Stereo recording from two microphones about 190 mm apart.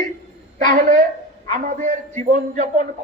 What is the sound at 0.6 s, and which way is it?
A woman's voice, 45° right (ahead or behind).